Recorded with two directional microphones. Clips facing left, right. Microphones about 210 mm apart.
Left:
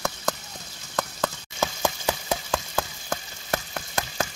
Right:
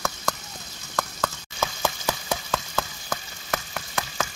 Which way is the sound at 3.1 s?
30° left (ahead or behind).